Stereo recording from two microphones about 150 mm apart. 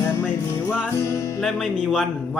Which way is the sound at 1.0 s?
20° left (ahead or behind).